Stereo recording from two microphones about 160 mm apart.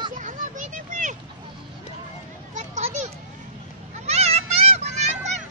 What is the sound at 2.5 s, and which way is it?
Children playing, 45° right (ahead or behind).